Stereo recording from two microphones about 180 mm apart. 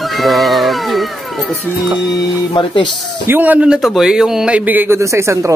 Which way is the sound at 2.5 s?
25° left (ahead or behind).